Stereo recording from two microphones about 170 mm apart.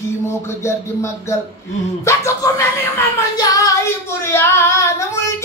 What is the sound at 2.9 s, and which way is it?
Child singing, 20° left (ahead or behind).